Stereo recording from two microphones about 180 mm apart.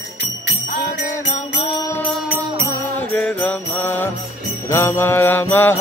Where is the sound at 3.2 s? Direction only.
5° left (ahead or behind).